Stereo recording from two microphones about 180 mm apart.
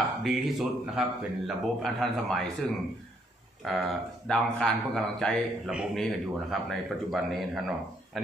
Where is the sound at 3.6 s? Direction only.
Centre (ahead or behind).